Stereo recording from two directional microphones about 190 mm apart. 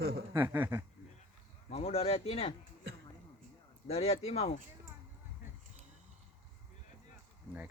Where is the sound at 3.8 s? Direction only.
30° left (ahead or behind).